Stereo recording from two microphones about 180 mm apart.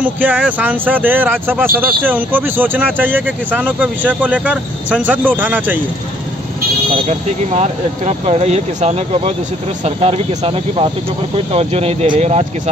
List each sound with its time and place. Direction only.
0.0 s speech: 10° right (ahead or behind)
7.1 s speech: 40° right (ahead or behind)